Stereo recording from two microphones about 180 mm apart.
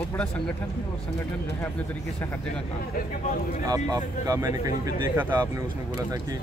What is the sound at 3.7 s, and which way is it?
Speech, 20° right (ahead or behind).